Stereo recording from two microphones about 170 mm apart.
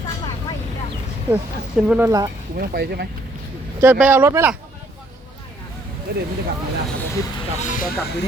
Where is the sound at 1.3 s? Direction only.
10° right (ahead or behind).